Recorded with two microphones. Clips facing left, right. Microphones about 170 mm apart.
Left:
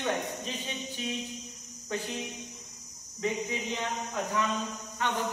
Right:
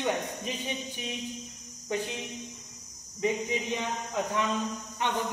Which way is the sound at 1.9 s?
15° right (ahead or behind).